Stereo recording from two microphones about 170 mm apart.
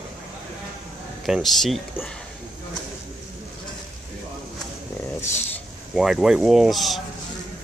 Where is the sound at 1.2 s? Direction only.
Centre (ahead or behind).